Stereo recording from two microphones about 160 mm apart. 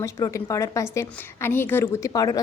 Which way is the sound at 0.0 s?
20° left (ahead or behind).